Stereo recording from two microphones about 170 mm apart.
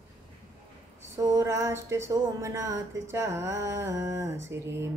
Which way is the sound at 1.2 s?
20° right (ahead or behind).